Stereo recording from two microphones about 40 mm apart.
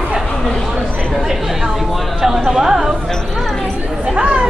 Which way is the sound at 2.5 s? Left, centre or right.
Centre.